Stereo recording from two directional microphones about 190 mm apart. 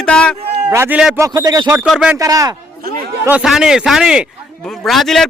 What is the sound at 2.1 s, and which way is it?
Speech, 20° right (ahead or behind).